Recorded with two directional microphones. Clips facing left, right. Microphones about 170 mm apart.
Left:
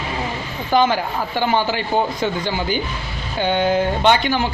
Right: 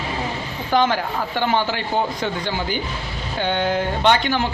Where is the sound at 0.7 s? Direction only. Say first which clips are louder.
Left 2 dB; 10° left (ahead or behind).